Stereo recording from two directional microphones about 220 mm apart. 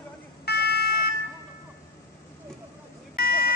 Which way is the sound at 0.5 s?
45° left (ahead or behind).